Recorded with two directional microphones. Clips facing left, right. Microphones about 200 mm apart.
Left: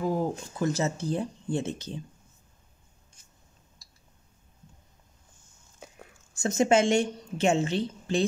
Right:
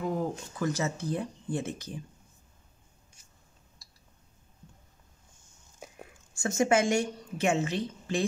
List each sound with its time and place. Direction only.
0.0 s speech: 30° left (ahead or behind)
6.4 s speech: 20° left (ahead or behind)